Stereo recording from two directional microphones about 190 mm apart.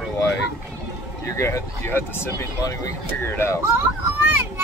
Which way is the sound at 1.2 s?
15° left (ahead or behind).